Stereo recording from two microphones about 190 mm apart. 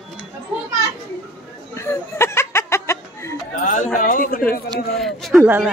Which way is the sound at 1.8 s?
15° left (ahead or behind).